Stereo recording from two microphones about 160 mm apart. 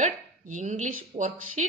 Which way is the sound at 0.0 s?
50° right (ahead or behind).